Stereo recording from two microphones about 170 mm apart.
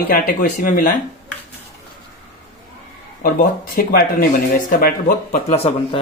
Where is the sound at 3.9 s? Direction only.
60° left (ahead or behind).